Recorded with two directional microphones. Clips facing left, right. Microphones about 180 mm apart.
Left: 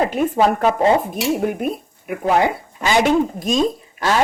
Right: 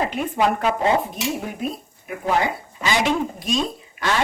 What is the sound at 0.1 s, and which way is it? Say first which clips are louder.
Speech: left 5 dB; 40° left (ahead or behind).